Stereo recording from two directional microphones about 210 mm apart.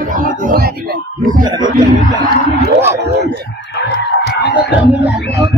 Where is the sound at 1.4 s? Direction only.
20° right (ahead or behind).